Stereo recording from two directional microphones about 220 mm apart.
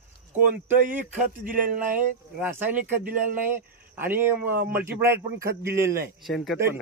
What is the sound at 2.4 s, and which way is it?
Speech, 10° right (ahead or behind).